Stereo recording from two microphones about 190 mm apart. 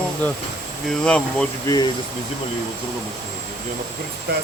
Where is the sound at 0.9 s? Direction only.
5° left (ahead or behind).